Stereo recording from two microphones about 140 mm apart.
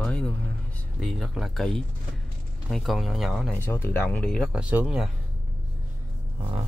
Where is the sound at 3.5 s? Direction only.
15° left (ahead or behind); by 5.1 s 5° right (ahead or behind).